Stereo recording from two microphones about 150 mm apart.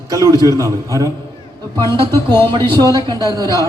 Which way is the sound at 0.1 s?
25° right (ahead or behind).